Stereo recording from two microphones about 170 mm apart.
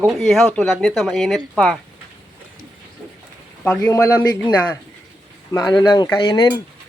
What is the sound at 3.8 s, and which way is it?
Speech, 20° left (ahead or behind).